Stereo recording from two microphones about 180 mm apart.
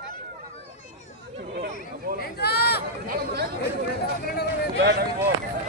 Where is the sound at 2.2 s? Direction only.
60° left (ahead or behind).